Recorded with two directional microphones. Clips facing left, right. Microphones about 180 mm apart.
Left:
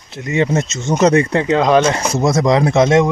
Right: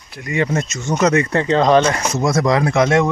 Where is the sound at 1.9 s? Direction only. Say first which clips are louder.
Left 2 dB; 25° left (ahead or behind).